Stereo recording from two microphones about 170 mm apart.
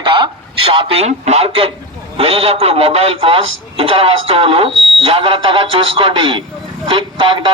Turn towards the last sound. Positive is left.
turn(degrees=-30)  # may be behind; listen again after turning